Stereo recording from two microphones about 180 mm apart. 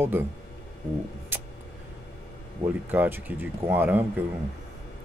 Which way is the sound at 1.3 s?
10° right (ahead or behind).